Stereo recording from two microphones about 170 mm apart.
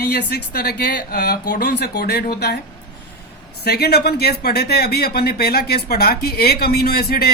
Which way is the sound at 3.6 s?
70° left (ahead or behind).